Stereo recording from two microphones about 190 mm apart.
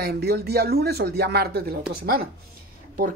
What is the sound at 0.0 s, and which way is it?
Speech, 55° right (ahead or behind).